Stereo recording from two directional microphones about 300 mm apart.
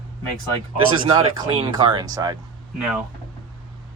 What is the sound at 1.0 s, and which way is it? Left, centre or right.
Speech, centre.